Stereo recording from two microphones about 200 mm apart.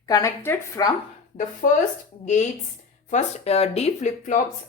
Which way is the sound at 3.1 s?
30° left (ahead or behind).